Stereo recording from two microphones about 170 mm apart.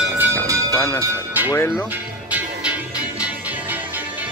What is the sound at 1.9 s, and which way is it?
Music, 10° right (ahead or behind).